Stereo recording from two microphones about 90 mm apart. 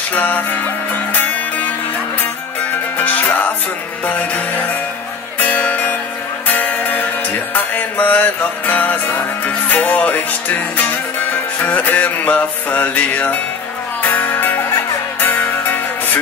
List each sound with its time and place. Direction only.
0.1 s music: 20° left (ahead or behind)
3.0 s music: 20° left (ahead or behind)